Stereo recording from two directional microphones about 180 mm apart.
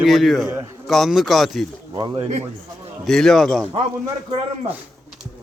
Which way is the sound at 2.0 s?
25° right (ahead or behind).